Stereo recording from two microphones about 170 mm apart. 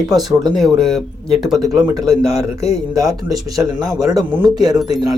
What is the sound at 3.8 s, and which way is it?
Speech, 20° right (ahead or behind).